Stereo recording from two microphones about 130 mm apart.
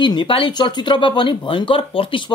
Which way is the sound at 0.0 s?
40° left (ahead or behind).